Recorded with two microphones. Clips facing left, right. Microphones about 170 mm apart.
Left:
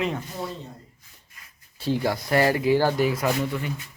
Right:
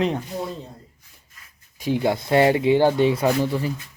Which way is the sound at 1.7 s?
15° right (ahead or behind).